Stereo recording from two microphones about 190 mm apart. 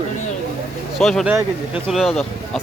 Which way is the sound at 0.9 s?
Centre (ahead or behind).